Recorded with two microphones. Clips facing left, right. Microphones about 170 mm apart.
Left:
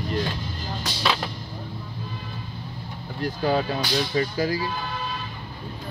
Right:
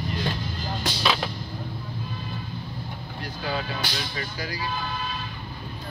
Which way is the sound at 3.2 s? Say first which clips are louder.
Left 8 dB; 45° left (ahead or behind).